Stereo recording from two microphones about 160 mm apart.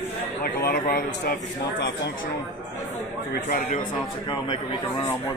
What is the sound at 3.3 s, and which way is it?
Speech, 65° left (ahead or behind).